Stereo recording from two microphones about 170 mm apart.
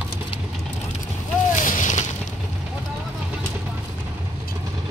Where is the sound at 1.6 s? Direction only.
50° left (ahead or behind).